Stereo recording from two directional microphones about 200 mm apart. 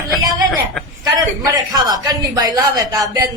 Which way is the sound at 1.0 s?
20° right (ahead or behind).